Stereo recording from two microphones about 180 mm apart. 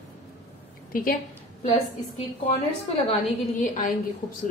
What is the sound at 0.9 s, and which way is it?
Speech, 50° left (ahead or behind).